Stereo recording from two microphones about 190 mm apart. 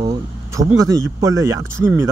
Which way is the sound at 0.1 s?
15° right (ahead or behind).